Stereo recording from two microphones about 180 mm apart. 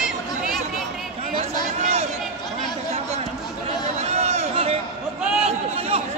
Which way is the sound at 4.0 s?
35° right (ahead or behind).